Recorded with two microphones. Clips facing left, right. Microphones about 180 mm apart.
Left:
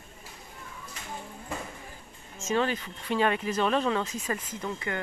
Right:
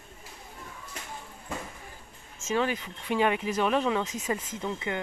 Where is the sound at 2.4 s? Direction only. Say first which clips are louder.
Left 1 dB; 10° right (ahead or behind).